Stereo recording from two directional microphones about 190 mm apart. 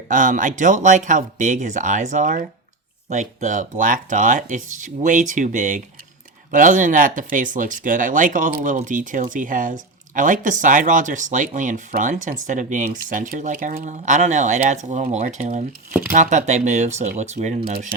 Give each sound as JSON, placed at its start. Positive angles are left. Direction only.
{"t": 0.1, "sound": "speech", "side_deg": -45}
{"t": 15.9, "sound": "speech", "side_deg": -10}
{"t": 16.1, "sound": "speech", "side_deg": -40}